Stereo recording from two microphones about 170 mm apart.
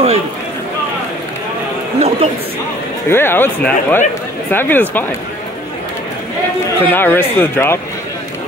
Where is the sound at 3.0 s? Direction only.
15° left (ahead or behind).